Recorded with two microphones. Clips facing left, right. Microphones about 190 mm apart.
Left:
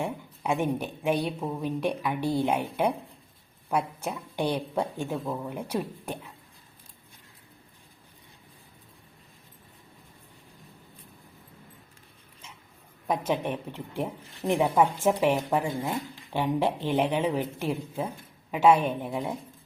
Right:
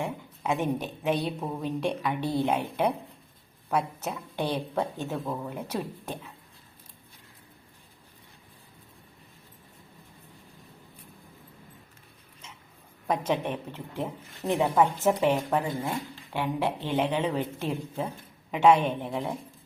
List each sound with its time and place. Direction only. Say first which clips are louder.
0.0 s speech: left 1 dB; 10° left (ahead or behind)
13.4 s a woman's voice: left 1 dB; 10° left (ahead or behind)